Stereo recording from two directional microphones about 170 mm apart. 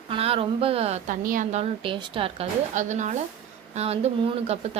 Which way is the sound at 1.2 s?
50° right (ahead or behind).